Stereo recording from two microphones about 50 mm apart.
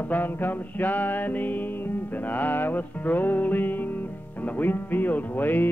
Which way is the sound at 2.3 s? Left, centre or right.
Left.